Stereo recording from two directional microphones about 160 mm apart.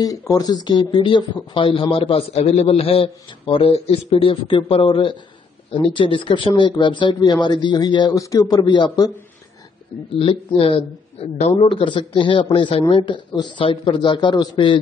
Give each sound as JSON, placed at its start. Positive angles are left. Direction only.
{"t": 0.0, "sound": "speech", "side_deg": 20}
{"t": 10.6, "sound": "speech", "side_deg": 35}